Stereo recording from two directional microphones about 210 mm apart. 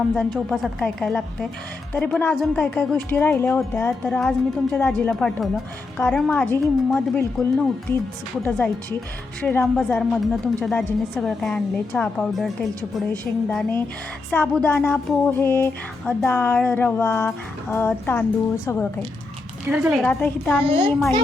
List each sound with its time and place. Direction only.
0.1 s speech: centre (ahead or behind)
1.9 s music: 5° left (ahead or behind)
6.0 s speech: 5° left (ahead or behind)
8.4 s music: 5° left (ahead or behind)
9.4 s speech: 10° left (ahead or behind)
13.5 s speech: 5° left (ahead or behind)
14.3 s music: 5° left (ahead or behind)
19.6 s speech: 10° right (ahead or behind); by 20.7 s 5° left (ahead or behind)
20.7 s a child's voice: 25° right (ahead or behind)